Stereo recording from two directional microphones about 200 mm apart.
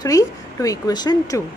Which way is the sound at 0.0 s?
15° left (ahead or behind).